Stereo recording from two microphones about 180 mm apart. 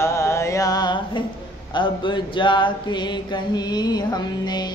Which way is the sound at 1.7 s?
25° left (ahead or behind).